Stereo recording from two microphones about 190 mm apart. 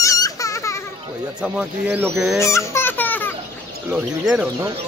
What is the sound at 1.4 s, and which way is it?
Speech, 5° right (ahead or behind).